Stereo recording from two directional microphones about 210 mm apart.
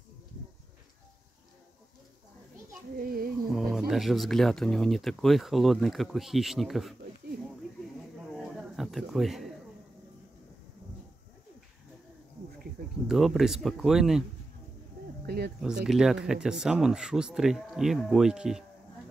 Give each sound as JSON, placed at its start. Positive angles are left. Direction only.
{"t": 3.0, "sound": "music", "side_deg": -45}
{"t": 3.5, "sound": "speech", "side_deg": 0}
{"t": 8.0, "sound": "a sound", "side_deg": 0}
{"t": 13.0, "sound": "speech", "side_deg": 0}
{"t": 15.2, "sound": "speech", "side_deg": -50}
{"t": 15.6, "sound": "speech", "side_deg": -5}